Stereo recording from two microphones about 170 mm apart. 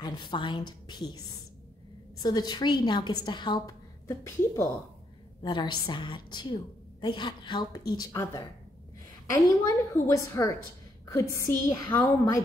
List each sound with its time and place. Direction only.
0.0 s a woman's voice: 25° left (ahead or behind)
2.2 s a woman's voice: 25° left (ahead or behind)